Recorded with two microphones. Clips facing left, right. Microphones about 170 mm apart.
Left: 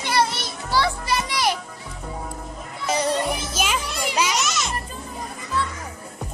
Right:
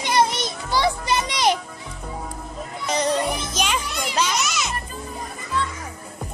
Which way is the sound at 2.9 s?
5° left (ahead or behind).